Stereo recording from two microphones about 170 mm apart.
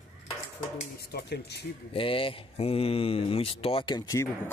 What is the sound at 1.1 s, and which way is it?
Speech, 75° left (ahead or behind).